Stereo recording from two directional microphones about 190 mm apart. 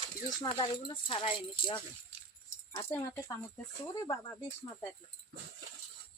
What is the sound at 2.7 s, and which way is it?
Speech, 15° left (ahead or behind).